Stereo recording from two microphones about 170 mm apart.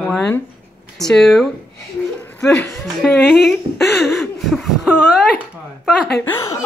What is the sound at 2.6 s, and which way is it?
Speech, 10° left (ahead or behind).